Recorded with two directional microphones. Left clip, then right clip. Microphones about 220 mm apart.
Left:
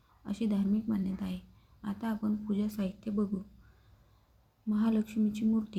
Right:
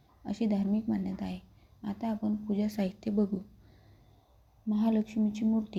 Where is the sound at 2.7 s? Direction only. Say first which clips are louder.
Right 4 dB; 15° right (ahead or behind).